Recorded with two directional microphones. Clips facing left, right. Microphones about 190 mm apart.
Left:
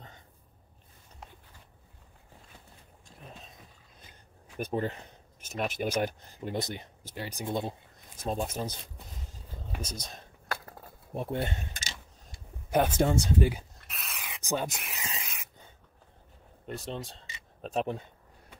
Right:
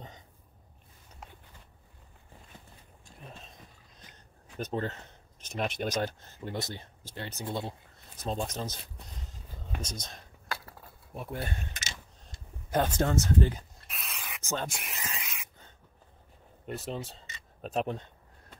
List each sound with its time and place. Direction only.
3.1 s a sound: centre (ahead or behind)
4.6 s speech: 10° left (ahead or behind)
10.5 s cutlery: 45° left (ahead or behind)
11.1 s speech: 25° left (ahead or behind)
12.7 s speech: 10° left (ahead or behind)
14.1 s a sound: 15° left (ahead or behind)
14.7 s speech: centre (ahead or behind)
15.0 s spray: 35° left (ahead or behind)
16.6 s speech: centre (ahead or behind)